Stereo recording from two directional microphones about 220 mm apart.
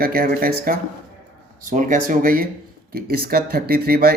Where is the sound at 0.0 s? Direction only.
45° right (ahead or behind).